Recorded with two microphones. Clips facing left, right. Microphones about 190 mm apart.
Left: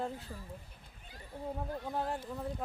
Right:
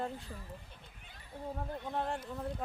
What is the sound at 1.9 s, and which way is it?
Speech, 5° left (ahead or behind).